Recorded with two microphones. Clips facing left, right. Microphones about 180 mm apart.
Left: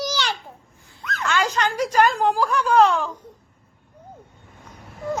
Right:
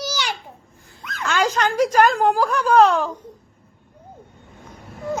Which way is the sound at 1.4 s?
45° right (ahead or behind).